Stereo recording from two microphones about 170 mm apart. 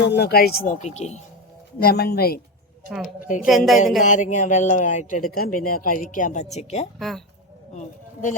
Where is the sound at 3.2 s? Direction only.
50° left (ahead or behind).